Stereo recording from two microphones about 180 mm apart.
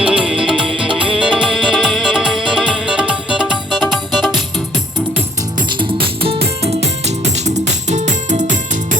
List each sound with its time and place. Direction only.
0.1 s music: 5° right (ahead or behind)
5.7 s music: 30° right (ahead or behind); by 9.0 s 45° right (ahead or behind)